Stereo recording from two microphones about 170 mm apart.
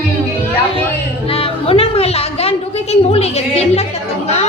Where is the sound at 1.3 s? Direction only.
35° left (ahead or behind).